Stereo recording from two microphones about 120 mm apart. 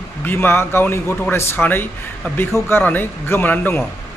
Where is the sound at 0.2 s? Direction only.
15° left (ahead or behind).